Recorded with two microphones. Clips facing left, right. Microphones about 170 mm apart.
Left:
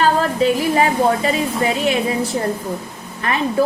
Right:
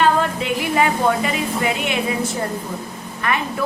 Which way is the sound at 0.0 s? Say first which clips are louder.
Left 2 dB; 35° left (ahead or behind).